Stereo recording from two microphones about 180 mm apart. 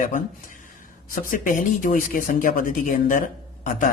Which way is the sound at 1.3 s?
50° left (ahead or behind).